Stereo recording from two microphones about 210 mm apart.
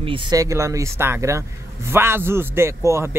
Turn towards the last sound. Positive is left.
turn(degrees=-15)  # may be behind; listen again after turning